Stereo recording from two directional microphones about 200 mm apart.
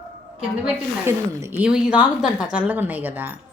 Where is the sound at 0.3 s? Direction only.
10° right (ahead or behind).